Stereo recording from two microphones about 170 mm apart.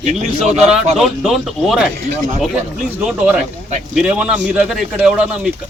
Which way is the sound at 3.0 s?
5° right (ahead or behind).